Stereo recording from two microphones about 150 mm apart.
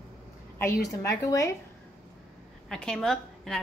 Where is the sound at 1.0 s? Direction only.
20° left (ahead or behind).